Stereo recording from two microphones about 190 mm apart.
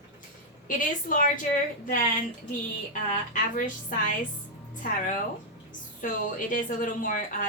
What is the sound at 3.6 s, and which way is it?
A woman's voice, 45° left (ahead or behind).